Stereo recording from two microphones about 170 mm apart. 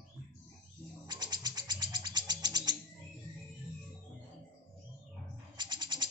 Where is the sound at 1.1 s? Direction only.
25° right (ahead or behind).